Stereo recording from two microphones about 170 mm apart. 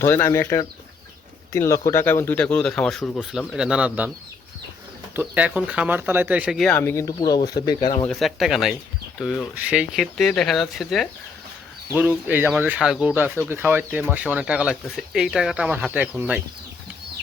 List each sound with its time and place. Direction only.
0.0 s speech: 15° left (ahead or behind); by 4.1 s 10° right (ahead or behind)
5.1 s speech: 10° right (ahead or behind)
6.7 s speech: 15° left (ahead or behind)
8.0 s speech: centre (ahead or behind)
11.9 s speech: 10° right (ahead or behind)